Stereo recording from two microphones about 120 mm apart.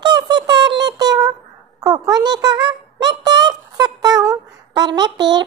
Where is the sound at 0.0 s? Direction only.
35° right (ahead or behind).